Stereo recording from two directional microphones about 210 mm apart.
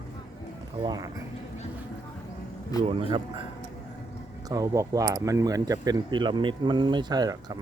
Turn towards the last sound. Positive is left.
turn(degrees=-20)  # may be behind; listen again after turning